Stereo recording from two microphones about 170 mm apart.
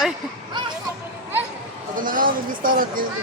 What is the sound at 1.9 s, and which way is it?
A man's voice, 55° right (ahead or behind).